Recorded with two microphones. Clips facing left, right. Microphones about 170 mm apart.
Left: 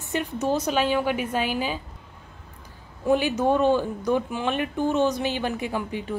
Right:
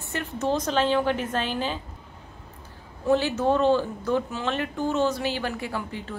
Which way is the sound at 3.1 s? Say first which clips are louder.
Left 1 dB; 15° left (ahead or behind).